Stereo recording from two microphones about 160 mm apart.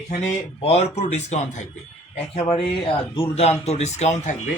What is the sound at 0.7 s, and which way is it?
Speech, 40° left (ahead or behind).